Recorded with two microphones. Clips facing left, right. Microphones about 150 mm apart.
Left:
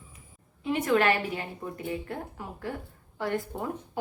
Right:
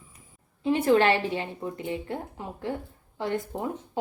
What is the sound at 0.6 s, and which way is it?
A woman's voice, 30° right (ahead or behind).